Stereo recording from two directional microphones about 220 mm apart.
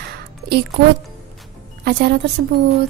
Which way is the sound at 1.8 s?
45° right (ahead or behind).